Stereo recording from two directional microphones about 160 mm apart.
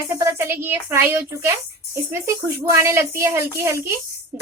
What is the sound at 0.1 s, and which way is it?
A woman's voice, 15° right (ahead or behind).